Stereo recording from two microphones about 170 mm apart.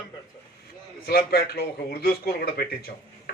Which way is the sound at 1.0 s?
65° left (ahead or behind).